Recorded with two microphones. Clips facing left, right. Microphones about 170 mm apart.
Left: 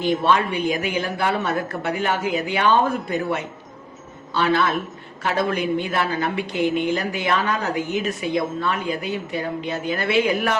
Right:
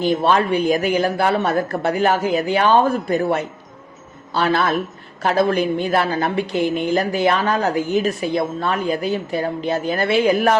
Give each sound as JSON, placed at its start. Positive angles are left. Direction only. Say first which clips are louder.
{"t": 0.0, "sound": "a woman's voice", "louder": "right 3 dB", "side_deg": -35}